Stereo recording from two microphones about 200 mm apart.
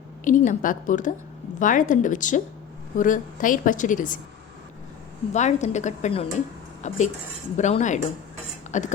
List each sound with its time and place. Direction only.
0.3 s a woman's voice: 40° left (ahead or behind)
5.3 s a woman's voice: 35° left (ahead or behind)